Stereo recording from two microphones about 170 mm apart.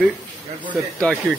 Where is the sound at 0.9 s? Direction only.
5° left (ahead or behind).